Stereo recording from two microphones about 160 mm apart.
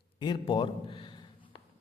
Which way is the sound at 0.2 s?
30° left (ahead or behind).